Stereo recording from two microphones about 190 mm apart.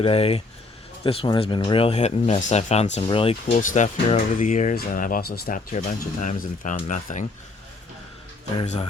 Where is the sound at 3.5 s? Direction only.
45° left (ahead or behind).